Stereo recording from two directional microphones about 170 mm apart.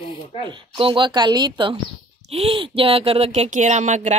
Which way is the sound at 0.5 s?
30° right (ahead or behind).